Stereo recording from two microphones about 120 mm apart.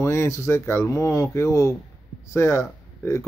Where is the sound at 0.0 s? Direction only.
25° left (ahead or behind).